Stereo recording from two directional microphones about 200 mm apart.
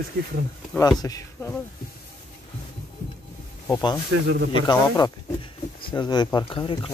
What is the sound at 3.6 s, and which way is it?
Speech, 15° left (ahead or behind).